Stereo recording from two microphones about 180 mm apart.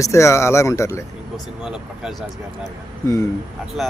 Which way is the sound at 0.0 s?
15° left (ahead or behind).